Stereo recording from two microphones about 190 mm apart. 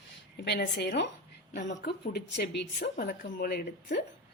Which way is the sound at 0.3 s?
65° left (ahead or behind).